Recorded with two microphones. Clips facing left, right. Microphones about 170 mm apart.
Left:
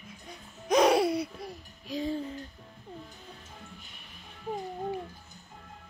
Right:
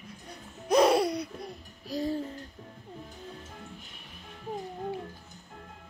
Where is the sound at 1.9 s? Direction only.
40° right (ahead or behind).